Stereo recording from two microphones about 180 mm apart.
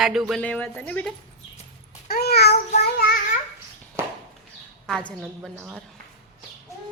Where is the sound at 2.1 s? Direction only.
65° left (ahead or behind).